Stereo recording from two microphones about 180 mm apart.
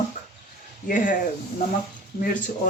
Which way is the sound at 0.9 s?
45° left (ahead or behind).